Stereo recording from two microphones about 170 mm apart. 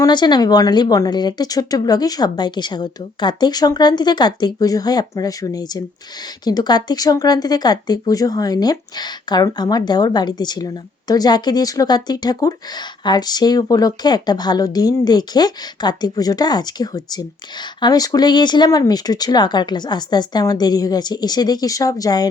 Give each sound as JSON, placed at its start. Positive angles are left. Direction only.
{"t": 0.0, "sound": "speech", "side_deg": 25}